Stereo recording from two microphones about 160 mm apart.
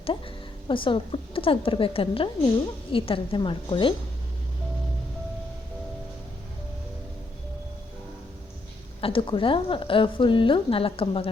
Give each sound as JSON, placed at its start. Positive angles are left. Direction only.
{"t": 0.0, "sound": "a woman's voice", "side_deg": 35}
{"t": 9.0, "sound": "a woman's voice", "side_deg": 35}